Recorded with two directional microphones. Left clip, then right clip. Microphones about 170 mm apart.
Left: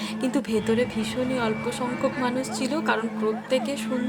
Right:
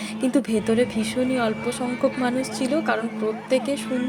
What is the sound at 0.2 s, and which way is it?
A woman's voice, 10° right (ahead or behind).